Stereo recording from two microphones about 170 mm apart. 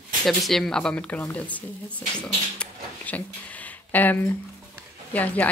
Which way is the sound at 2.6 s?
10° left (ahead or behind).